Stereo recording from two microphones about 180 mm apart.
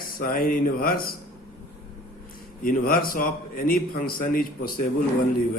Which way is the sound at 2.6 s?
50° left (ahead or behind).